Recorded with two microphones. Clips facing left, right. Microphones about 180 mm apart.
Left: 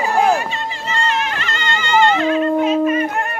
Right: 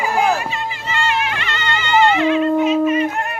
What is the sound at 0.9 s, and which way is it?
Music, 40° left (ahead or behind).